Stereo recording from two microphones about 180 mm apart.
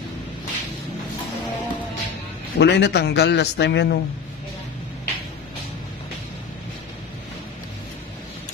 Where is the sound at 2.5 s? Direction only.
70° left (ahead or behind).